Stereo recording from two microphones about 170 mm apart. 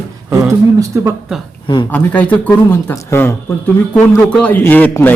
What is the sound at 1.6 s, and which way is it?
Speech, 25° left (ahead or behind).